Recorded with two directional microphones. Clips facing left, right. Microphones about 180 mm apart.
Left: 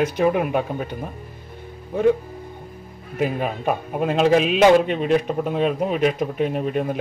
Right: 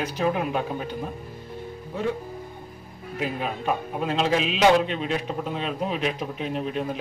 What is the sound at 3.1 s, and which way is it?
A man's voice, 50° left (ahead or behind).